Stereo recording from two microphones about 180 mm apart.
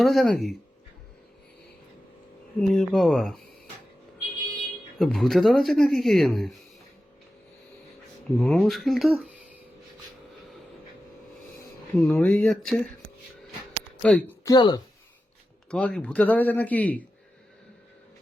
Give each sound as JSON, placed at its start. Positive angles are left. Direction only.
{"t": 0.0, "sound": "speech", "side_deg": 0}
{"t": 2.6, "sound": "speech", "side_deg": 0}
{"t": 4.9, "sound": "speech", "side_deg": 0}
{"t": 8.4, "sound": "speech", "side_deg": 0}
{"t": 11.9, "sound": "speech", "side_deg": 10}
{"t": 14.0, "sound": "speech", "side_deg": 5}
{"t": 14.4, "sound": "speech", "side_deg": 25}
{"t": 15.7, "sound": "speech", "side_deg": 5}